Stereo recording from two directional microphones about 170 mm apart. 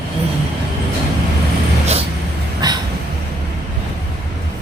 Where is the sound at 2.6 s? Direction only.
25° right (ahead or behind).